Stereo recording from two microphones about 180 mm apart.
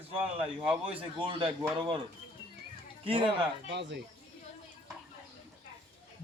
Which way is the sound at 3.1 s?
30° right (ahead or behind).